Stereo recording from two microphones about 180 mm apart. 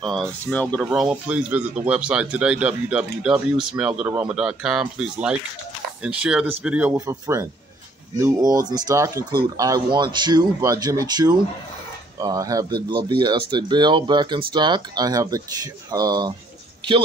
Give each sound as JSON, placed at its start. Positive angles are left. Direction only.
{"t": 0.0, "sound": "speech", "side_deg": 5}
{"t": 0.8, "sound": "speech", "side_deg": -5}